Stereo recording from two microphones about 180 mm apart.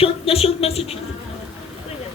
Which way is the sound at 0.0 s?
30° left (ahead or behind).